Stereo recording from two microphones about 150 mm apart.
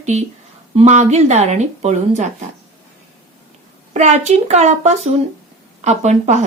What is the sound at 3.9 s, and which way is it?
Speech, 50° right (ahead or behind).